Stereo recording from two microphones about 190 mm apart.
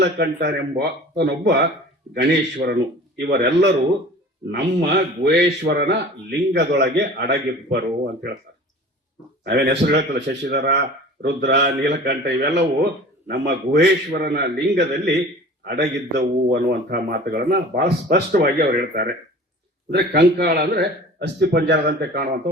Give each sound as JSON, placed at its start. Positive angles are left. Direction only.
{"t": 0.0, "sound": "speech", "side_deg": -60}
{"t": 9.4, "sound": "speech", "side_deg": -60}